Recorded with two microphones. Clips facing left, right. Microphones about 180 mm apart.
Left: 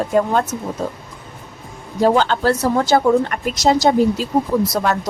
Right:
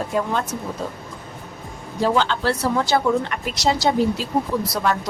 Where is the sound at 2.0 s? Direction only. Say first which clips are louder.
Left 5 dB; 45° left (ahead or behind).